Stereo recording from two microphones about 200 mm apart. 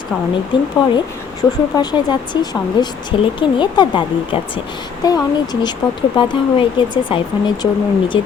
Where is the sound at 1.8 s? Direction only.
20° left (ahead or behind).